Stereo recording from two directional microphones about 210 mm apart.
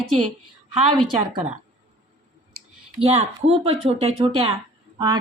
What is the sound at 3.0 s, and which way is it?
A woman's voice, 30° right (ahead or behind).